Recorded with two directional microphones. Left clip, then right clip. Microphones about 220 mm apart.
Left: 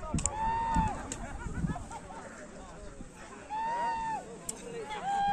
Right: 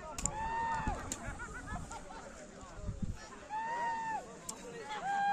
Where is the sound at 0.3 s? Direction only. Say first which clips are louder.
Left 5 dB; 50° left (ahead or behind).